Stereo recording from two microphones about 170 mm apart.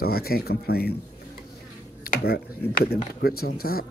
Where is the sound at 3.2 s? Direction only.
65° left (ahead or behind).